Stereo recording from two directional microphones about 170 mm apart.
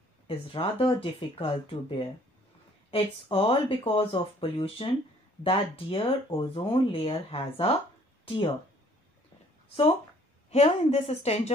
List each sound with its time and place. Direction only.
0.3 s speech: 35° left (ahead or behind)
10.5 s speech: 40° left (ahead or behind)